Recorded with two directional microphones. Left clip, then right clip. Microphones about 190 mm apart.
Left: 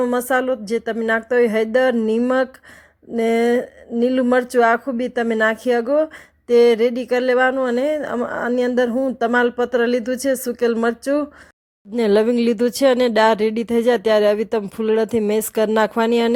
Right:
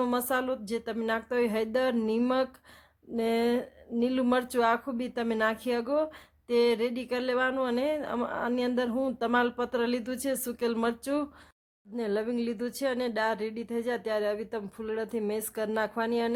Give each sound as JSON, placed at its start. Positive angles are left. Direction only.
{"t": 0.0, "sound": "speech", "side_deg": 20}
{"t": 11.9, "sound": "speech", "side_deg": 40}